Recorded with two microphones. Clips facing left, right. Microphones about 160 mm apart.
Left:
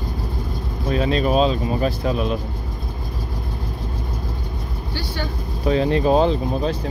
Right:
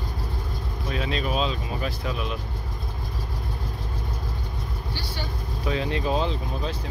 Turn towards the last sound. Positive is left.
turn(degrees=50)  # may be behind; listen again after turning